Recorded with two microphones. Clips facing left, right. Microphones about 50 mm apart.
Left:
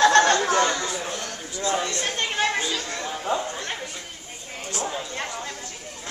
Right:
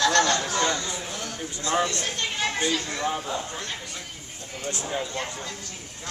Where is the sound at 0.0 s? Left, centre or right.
Left.